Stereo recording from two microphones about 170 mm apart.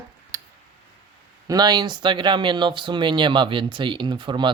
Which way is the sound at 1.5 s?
25° right (ahead or behind).